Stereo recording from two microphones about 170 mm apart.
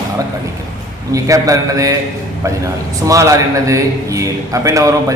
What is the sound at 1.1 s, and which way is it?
A man's voice, 20° right (ahead or behind).